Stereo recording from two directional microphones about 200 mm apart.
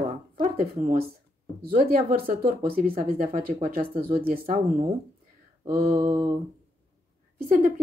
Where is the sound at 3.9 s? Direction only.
30° right (ahead or behind).